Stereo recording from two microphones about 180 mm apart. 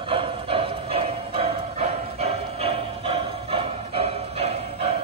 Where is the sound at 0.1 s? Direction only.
30° right (ahead or behind).